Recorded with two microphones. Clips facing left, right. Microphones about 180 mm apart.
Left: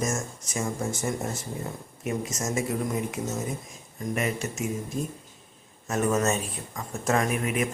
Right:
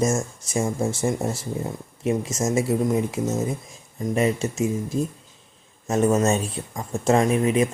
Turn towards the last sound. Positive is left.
turn(degrees=-30)  # may be behind; listen again after turning